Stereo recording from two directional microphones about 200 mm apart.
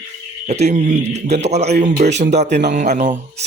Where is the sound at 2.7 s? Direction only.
40° right (ahead or behind).